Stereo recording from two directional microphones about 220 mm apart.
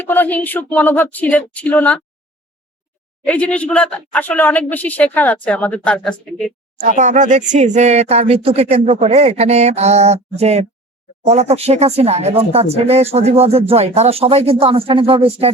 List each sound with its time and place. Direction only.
0.0 s a woman's voice: 10° left (ahead or behind)
3.2 s a woman's voice: 5° left (ahead or behind)
6.7 s speech: 35° right (ahead or behind)